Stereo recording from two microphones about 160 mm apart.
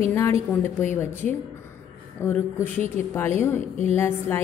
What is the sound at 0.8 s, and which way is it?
Speech, 15° left (ahead or behind).